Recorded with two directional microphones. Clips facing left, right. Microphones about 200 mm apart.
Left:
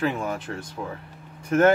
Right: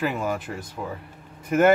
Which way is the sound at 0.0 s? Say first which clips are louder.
Even; 5° right (ahead or behind).